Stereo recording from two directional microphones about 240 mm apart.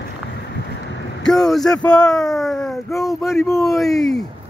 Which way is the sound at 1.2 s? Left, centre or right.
Centre.